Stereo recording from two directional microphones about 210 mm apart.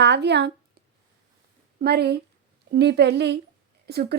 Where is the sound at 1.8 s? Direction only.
50° right (ahead or behind).